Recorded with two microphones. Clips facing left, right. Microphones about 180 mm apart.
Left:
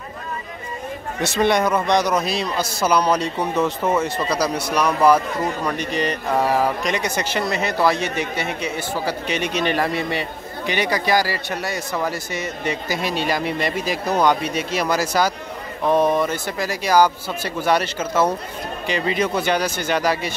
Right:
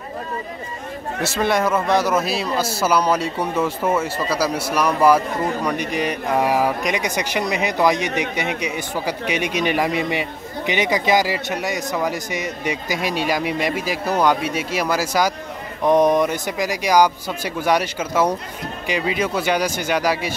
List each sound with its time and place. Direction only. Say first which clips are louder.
1.2 s a man's voice: left 1 dB; 5° right (ahead or behind)